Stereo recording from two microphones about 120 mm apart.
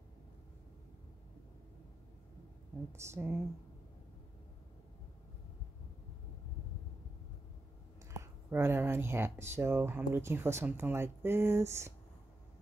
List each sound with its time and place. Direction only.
2.9 s speech: 20° right (ahead or behind)
8.2 s speech: 20° right (ahead or behind)